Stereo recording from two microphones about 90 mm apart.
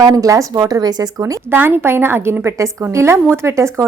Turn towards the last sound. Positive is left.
turn(degrees=-30)  # may be behind; listen again after turning